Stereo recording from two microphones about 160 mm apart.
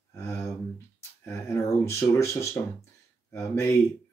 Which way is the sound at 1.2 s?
15° left (ahead or behind).